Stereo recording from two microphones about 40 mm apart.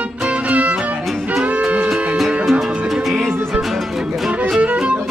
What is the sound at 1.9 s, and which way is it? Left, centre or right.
Music, centre.